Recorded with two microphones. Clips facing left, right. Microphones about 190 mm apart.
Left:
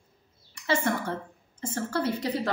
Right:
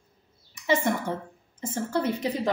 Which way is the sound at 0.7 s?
15° right (ahead or behind).